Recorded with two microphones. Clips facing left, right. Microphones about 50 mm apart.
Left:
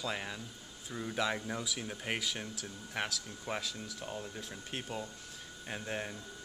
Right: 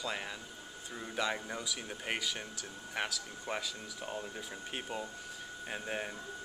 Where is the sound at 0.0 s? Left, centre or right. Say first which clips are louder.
Left 1 dB; centre.